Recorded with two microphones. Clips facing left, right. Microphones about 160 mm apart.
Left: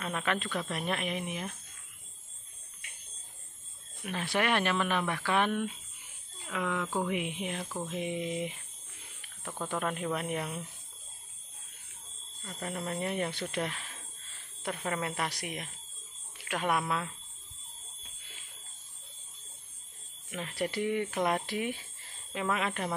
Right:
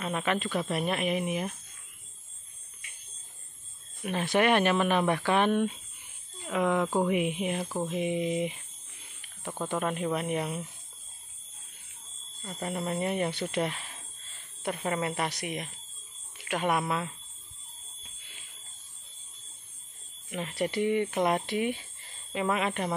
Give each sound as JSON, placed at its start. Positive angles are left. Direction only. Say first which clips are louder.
{"t": 0.0, "sound": "speech", "louder": "right 3 dB", "side_deg": -5}
{"t": 4.0, "sound": "speech", "louder": "right 6 dB", "side_deg": -20}
{"t": 7.1, "sound": "speech", "louder": "right 6 dB", "side_deg": -15}
{"t": 9.7, "sound": "speech", "louder": "right 3 dB", "side_deg": -5}
{"t": 12.5, "sound": "speech", "louder": "right 4 dB", "side_deg": -10}
{"t": 20.2, "sound": "speech", "louder": "right 3 dB", "side_deg": -5}